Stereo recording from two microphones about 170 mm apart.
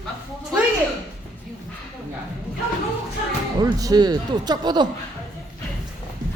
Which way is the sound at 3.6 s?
20° right (ahead or behind).